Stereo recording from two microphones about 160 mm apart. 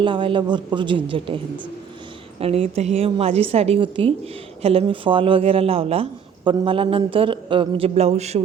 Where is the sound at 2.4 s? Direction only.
40° right (ahead or behind).